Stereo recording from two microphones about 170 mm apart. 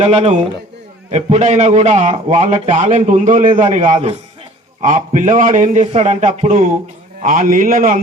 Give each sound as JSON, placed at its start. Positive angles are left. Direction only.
{"t": 0.0, "sound": "a man's voice", "side_deg": -40}